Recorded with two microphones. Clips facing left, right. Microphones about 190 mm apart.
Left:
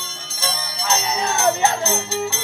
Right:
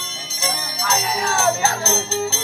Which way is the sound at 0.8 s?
25° left (ahead or behind).